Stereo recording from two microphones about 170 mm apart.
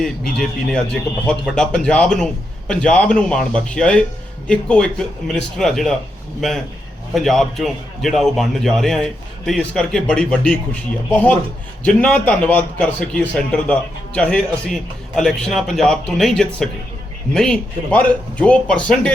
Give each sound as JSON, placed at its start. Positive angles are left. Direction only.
{"t": 0.0, "sound": "speech", "side_deg": 5}
{"t": 7.1, "sound": "speech", "side_deg": 0}